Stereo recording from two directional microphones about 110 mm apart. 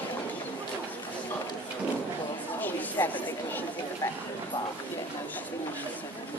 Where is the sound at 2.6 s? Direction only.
15° left (ahead or behind).